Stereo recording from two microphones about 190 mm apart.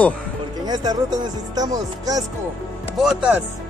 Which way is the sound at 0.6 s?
20° right (ahead or behind).